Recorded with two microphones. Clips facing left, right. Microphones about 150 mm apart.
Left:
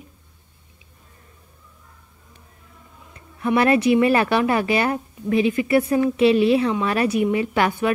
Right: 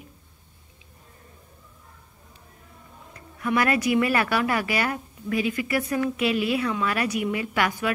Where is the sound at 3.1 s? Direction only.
25° left (ahead or behind).